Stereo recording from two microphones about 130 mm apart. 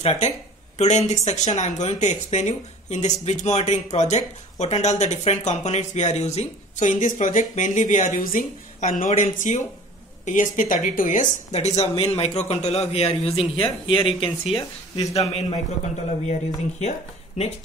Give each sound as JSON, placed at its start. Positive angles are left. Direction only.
{"t": 0.0, "sound": "speech", "side_deg": 60}
{"t": 9.1, "sound": "speech", "side_deg": 65}
{"t": 10.2, "sound": "a man's voice", "side_deg": 80}